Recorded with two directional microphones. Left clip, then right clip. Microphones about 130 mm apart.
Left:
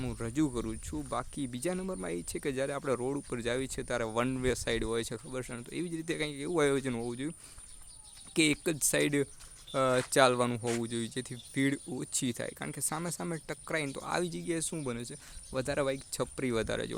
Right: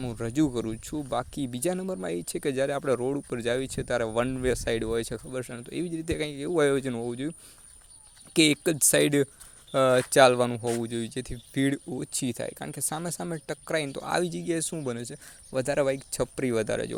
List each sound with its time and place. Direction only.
0.0 s speech: 25° right (ahead or behind)